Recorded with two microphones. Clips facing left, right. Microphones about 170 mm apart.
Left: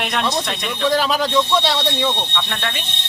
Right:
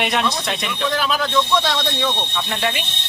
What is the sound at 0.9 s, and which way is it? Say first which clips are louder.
Speech: left 5 dB; 35° left (ahead or behind).